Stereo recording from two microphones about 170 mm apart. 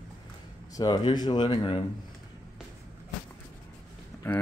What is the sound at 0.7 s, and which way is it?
Speech, 25° left (ahead or behind).